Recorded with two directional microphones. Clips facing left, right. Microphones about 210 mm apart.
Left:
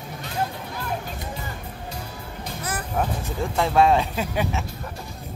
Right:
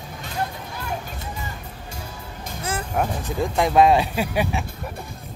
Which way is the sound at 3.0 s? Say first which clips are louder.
Right 2 dB; 15° right (ahead or behind).